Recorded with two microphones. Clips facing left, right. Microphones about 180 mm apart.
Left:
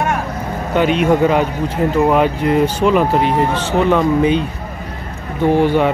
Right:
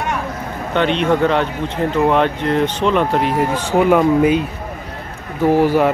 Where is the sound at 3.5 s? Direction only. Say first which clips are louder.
Right 1 dB; 10° right (ahead or behind).